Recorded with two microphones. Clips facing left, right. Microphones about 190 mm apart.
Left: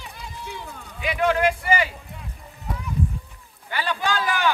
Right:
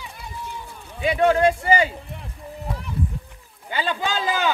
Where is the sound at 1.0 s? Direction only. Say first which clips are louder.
Right 4 dB; 30° right (ahead or behind).